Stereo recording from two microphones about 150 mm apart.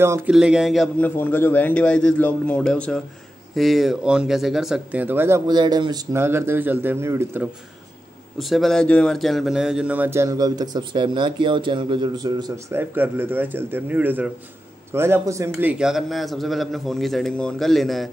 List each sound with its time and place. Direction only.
0.3 s a man's voice: 5° right (ahead or behind)
0.9 s a man's voice: 10° left (ahead or behind); by 5.4 s 15° right (ahead or behind)
5.5 s speech: 30° right (ahead or behind)
6.1 s speech: 15° right (ahead or behind)
8.4 s speech: centre (ahead or behind); by 12.5 s 25° right (ahead or behind)
12.7 s speech: 15° right (ahead or behind)
15.8 s a man's voice: centre (ahead or behind)